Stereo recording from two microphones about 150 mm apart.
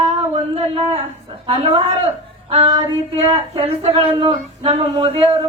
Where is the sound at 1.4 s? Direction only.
35° right (ahead or behind).